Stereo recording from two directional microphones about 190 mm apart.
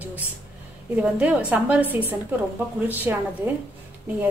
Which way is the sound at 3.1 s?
10° right (ahead or behind).